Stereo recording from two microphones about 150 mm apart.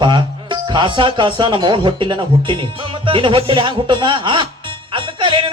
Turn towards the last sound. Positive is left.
turn(degrees=-35)  # may be behind; listen again after turning